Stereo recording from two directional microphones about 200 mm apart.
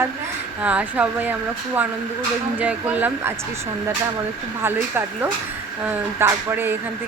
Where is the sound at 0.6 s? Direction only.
5° right (ahead or behind).